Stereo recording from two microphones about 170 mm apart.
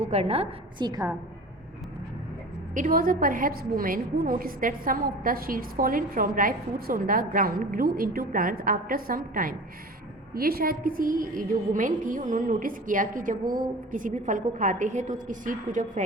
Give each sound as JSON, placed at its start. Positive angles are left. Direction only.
{"t": 0.0, "sound": "a woman's voice", "side_deg": -40}
{"t": 2.7, "sound": "a woman's voice", "side_deg": -50}